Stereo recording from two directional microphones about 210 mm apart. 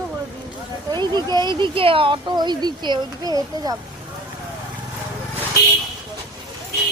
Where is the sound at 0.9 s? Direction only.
20° right (ahead or behind).